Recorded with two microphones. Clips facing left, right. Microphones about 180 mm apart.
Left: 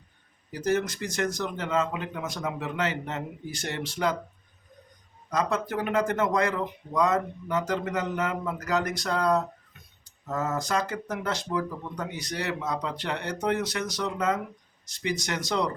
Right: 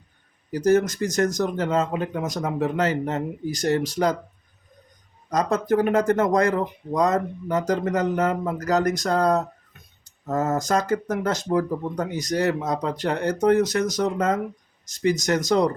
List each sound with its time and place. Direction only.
0.5 s speech: 45° right (ahead or behind)
5.3 s speech: 40° right (ahead or behind)